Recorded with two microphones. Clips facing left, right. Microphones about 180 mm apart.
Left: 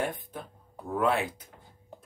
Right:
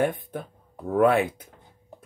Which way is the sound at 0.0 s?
55° right (ahead or behind).